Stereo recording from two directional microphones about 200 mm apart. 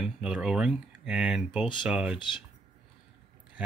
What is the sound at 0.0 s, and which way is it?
Speech, 5° right (ahead or behind).